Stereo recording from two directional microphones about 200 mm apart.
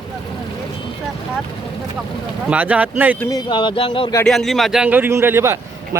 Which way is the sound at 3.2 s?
20° left (ahead or behind).